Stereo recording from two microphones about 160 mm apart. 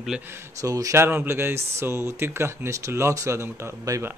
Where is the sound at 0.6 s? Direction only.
20° right (ahead or behind).